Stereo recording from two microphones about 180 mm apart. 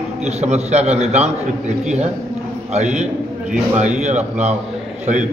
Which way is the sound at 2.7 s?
40° right (ahead or behind).